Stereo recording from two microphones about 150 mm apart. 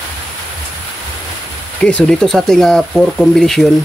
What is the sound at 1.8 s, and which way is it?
Speech, 5° left (ahead or behind).